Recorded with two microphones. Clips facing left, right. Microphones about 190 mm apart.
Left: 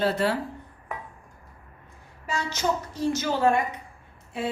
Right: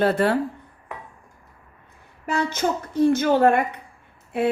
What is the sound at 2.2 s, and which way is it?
A woman's voice, 55° right (ahead or behind).